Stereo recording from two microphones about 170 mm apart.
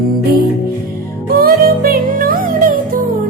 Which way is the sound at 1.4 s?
60° right (ahead or behind).